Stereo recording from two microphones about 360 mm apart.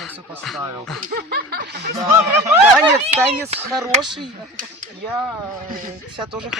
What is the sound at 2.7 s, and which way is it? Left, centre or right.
A man's voice, centre.